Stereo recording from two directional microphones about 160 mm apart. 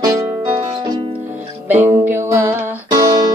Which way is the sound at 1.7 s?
10° right (ahead or behind).